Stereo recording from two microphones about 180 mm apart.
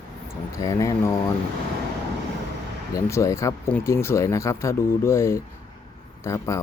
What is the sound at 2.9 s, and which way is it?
Speech, 15° left (ahead or behind).